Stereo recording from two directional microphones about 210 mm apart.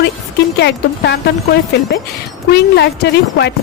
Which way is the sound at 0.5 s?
55° left (ahead or behind).